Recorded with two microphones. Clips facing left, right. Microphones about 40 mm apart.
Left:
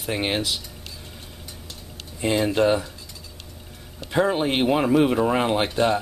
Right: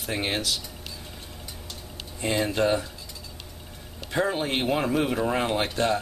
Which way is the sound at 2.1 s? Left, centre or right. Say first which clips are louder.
Left 4 dB; centre.